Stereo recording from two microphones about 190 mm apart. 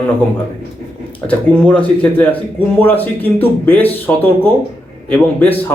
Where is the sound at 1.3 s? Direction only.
10° left (ahead or behind).